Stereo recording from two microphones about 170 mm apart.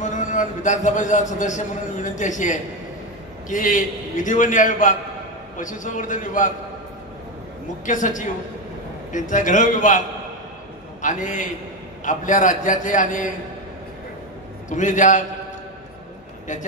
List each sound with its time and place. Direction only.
0.0 s a man's voice: 45° left (ahead or behind)
7.8 s a man's voice: 50° left (ahead or behind)
14.7 s a man's voice: 45° left (ahead or behind)